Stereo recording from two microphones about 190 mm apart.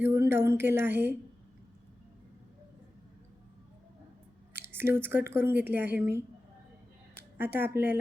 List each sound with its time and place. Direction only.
0.0 s speech: 15° right (ahead or behind)
4.5 s speech: 10° right (ahead or behind)